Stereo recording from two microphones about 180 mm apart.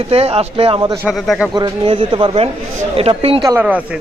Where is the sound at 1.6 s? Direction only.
30° right (ahead or behind).